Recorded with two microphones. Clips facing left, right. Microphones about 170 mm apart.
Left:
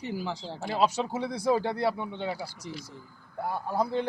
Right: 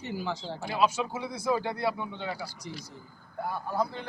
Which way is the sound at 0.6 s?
35° left (ahead or behind).